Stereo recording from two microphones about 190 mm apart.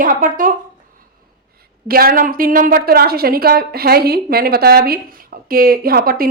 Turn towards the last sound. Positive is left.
turn(degrees=-50)  # may be behind; listen again after turning